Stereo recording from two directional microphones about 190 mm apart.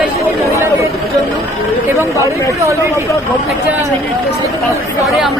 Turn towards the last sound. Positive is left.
turn(degrees=0)  # may be behind; listen again after turning